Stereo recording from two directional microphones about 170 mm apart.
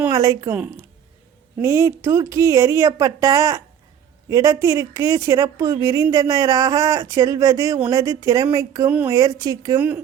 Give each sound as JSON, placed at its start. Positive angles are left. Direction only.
{"t": 0.1, "sound": "speech", "side_deg": -20}
{"t": 0.5, "sound": "a woman's voice", "side_deg": -10}
{"t": 9.1, "sound": "a woman's voice", "side_deg": -20}